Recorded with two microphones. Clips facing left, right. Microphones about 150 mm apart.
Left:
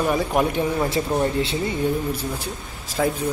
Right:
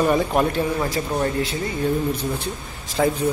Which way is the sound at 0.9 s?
25° left (ahead or behind).